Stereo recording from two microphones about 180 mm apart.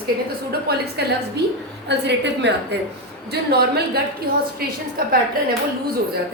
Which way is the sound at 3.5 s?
60° right (ahead or behind).